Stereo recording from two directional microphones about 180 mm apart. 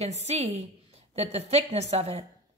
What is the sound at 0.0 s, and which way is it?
A woman's voice, 35° right (ahead or behind).